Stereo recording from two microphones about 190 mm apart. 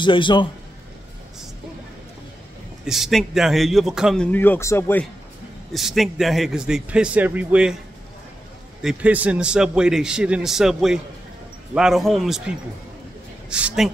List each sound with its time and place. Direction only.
0.0 s a man's voice: 25° left (ahead or behind)
2.8 s a man's voice: centre (ahead or behind)
5.7 s a man's voice: centre (ahead or behind)
8.8 s a man's voice: 5° right (ahead or behind)